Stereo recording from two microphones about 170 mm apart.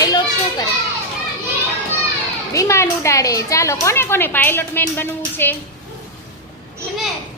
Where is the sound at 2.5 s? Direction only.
15° left (ahead or behind).